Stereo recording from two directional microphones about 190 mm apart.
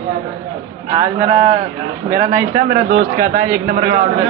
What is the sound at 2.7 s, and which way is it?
A man's voice, 45° right (ahead or behind).